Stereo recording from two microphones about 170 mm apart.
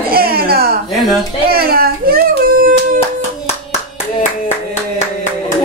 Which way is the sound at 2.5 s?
55° right (ahead or behind).